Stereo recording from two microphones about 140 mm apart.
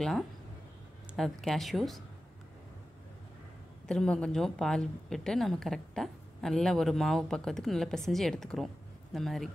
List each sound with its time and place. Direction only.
1.1 s a woman's voice: centre (ahead or behind)
3.8 s a woman's voice: 5° left (ahead or behind)